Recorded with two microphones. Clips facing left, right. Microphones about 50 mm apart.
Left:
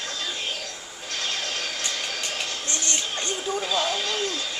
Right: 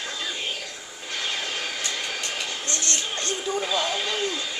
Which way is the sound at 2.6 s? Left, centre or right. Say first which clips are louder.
Right 1 dB; centre.